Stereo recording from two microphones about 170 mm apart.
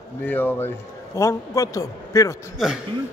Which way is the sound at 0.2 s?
10° left (ahead or behind).